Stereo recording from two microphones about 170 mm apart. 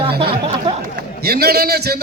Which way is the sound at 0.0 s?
30° right (ahead or behind).